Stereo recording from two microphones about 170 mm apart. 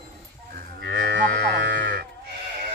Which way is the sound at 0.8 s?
70° right (ahead or behind).